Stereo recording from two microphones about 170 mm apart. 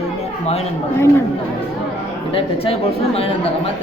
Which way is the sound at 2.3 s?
35° left (ahead or behind).